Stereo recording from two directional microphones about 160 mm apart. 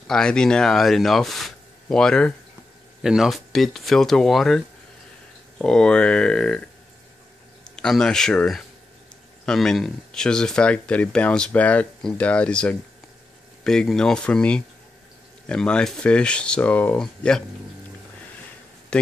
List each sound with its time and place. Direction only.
0.0 s speech: 5° left (ahead or behind)
7.7 s speech: 5° left (ahead or behind)